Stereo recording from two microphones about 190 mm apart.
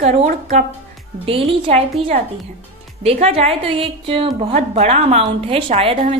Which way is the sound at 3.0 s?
30° right (ahead or behind).